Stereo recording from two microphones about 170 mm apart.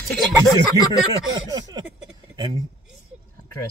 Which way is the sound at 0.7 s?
25° right (ahead or behind).